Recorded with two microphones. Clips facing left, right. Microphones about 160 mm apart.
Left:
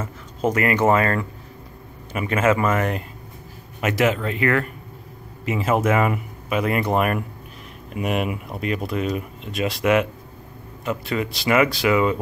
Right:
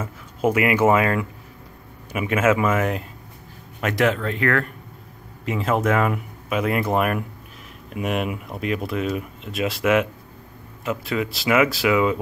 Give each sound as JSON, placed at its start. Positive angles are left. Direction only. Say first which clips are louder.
{"t": 0.0, "sound": "speech", "louder": "right 1 dB", "side_deg": -10}